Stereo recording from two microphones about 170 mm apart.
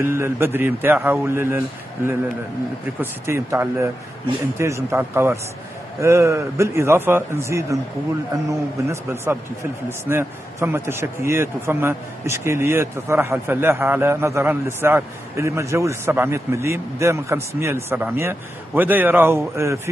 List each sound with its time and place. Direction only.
0.0 s a man's voice: 15° right (ahead or behind)
3.0 s a man's voice: 15° right (ahead or behind)